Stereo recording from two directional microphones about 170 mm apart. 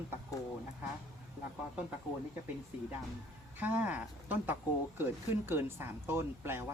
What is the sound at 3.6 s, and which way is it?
Speech, 10° right (ahead or behind).